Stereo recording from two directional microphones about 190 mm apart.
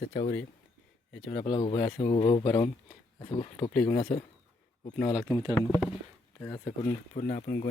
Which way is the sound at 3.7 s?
15° left (ahead or behind).